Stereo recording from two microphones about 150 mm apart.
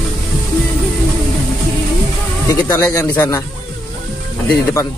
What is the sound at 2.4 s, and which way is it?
Speech, 25° left (ahead or behind).